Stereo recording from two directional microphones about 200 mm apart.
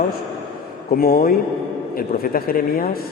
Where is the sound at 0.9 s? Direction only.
45° left (ahead or behind).